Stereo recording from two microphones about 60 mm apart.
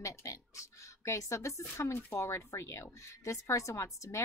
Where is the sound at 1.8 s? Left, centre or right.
Left.